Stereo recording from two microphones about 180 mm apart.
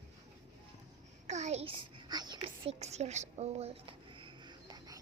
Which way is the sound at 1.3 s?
40° right (ahead or behind).